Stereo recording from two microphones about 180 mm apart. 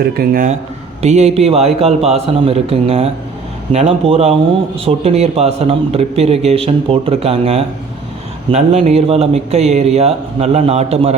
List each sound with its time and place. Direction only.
0.0 s speech: 55° right (ahead or behind)
1.0 s a man's voice: 35° right (ahead or behind)